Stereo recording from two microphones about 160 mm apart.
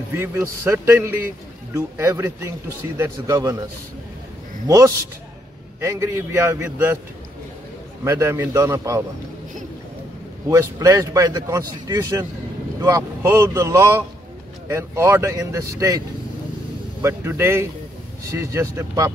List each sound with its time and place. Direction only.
0.1 s speech: 15° right (ahead or behind)
4.6 s speech: 20° right (ahead or behind)
8.0 s speech: 15° right (ahead or behind)
10.5 s speech: 20° right (ahead or behind)
17.0 s speech: 15° right (ahead or behind)